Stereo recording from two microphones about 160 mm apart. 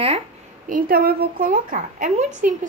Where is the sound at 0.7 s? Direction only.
65° right (ahead or behind).